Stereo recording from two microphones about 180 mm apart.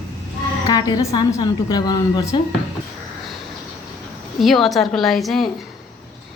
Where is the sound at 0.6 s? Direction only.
20° left (ahead or behind).